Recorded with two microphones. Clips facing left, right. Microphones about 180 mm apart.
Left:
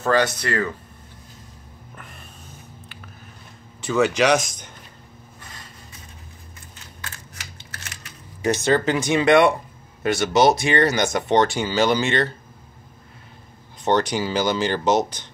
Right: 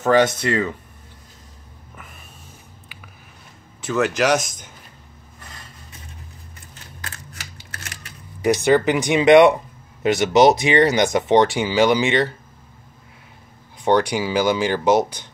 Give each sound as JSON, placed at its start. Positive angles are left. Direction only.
{"t": 0.0, "sound": "speech", "side_deg": -20}
{"t": 2.0, "sound": "a sound", "side_deg": -5}
{"t": 3.8, "sound": "speech", "side_deg": 0}
{"t": 8.5, "sound": "speech", "side_deg": -15}
{"t": 13.8, "sound": "speech", "side_deg": -10}